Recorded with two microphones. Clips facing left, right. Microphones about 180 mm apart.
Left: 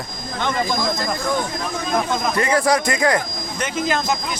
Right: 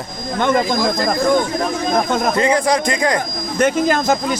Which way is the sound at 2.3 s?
20° right (ahead or behind).